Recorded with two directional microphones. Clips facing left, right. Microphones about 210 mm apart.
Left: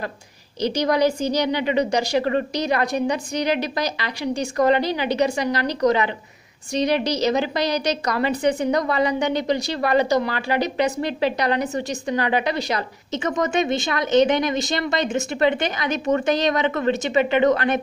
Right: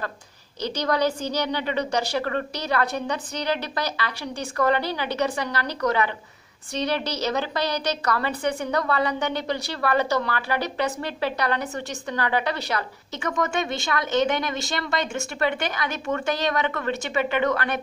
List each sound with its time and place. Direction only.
0.6 s a woman's voice: 10° left (ahead or behind)